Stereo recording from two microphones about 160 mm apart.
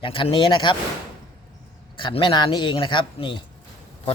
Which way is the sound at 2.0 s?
30° left (ahead or behind).